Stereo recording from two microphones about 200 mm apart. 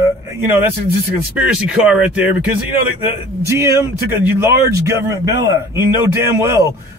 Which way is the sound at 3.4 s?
15° right (ahead or behind).